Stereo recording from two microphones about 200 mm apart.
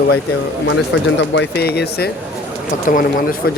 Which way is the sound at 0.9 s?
60° left (ahead or behind).